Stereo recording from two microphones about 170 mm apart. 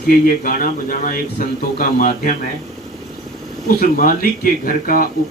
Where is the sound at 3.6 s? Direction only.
55° left (ahead or behind).